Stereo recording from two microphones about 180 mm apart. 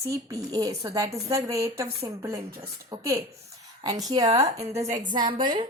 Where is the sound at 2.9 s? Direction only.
20° right (ahead or behind).